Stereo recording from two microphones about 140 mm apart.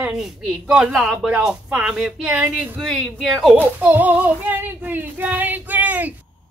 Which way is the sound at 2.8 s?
5° left (ahead or behind).